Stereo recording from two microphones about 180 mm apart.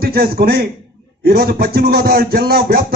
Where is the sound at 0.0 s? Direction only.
60° right (ahead or behind).